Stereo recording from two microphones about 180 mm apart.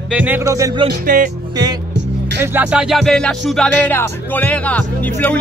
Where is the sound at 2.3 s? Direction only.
10° right (ahead or behind).